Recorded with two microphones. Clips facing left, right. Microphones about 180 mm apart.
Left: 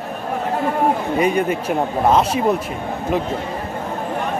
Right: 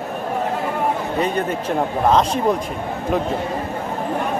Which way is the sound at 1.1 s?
10° left (ahead or behind).